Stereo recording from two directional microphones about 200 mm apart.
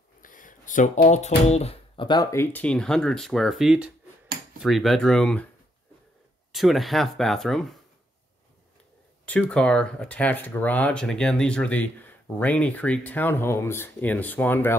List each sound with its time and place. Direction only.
0.2 s a sound: 40° left (ahead or behind)
1.5 s speech: 30° left (ahead or behind); by 5.5 s 5° left (ahead or behind)
6.5 s speech: centre (ahead or behind)
9.2 s speech: 5° left (ahead or behind)